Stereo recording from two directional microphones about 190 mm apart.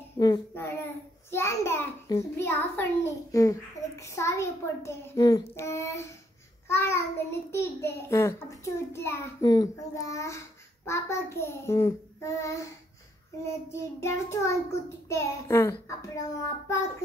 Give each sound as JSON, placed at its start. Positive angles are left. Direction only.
{"t": 0.2, "sound": "a child's voice", "side_deg": 15}
{"t": 13.7, "sound": "a child's voice", "side_deg": 15}